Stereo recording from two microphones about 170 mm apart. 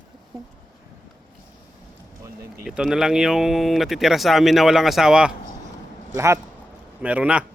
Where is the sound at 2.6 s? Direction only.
5° right (ahead or behind).